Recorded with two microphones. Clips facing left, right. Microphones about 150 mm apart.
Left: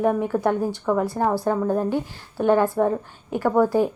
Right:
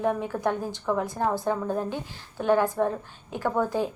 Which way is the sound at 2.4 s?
10° left (ahead or behind).